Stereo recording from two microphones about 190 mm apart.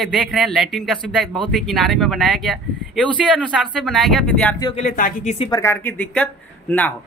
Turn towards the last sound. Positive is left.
turn(degrees=10)  # may be behind; listen again after turning